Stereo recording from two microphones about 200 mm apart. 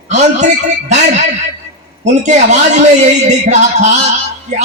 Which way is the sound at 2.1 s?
35° right (ahead or behind).